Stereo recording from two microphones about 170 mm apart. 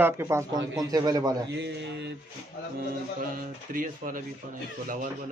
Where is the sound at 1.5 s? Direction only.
90° right.